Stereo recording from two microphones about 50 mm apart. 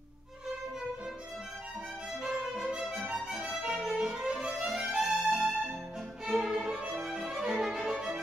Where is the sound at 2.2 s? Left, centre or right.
Centre.